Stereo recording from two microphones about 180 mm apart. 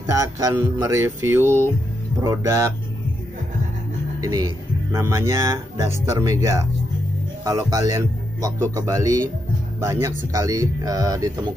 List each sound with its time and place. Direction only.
0.0 s speech: 15° right (ahead or behind)
4.2 s speech: 20° right (ahead or behind)